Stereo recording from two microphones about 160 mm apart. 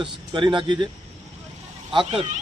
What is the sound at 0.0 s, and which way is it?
Speech, 30° right (ahead or behind).